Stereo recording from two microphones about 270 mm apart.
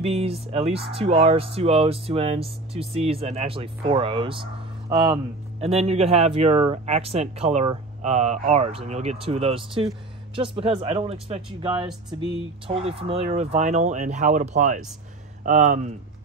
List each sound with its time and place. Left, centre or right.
0.0 s speech: right